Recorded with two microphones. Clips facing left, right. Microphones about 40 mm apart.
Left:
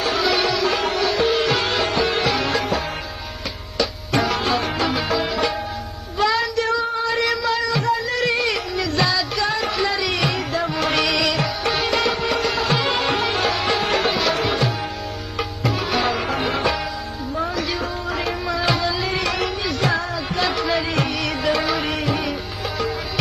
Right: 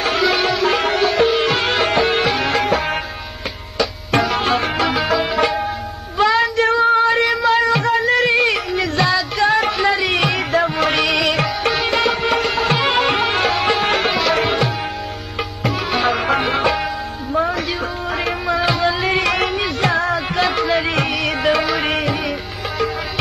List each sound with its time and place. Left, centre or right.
0.3 s music: right
4.4 s music: right
4.8 s music: centre
5.3 s music: right
6.1 s child singing: right
7.4 s music: right
11.0 s music: right
11.9 s music: right
14.3 s tabla: right
15.6 s music: right
16.1 s music: right
18.2 s music: right